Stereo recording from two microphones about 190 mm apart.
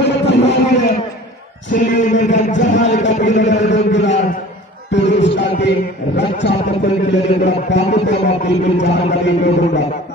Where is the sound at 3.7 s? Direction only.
70° left (ahead or behind).